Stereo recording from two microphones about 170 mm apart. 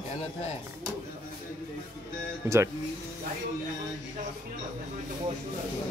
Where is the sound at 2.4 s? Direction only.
15° right (ahead or behind).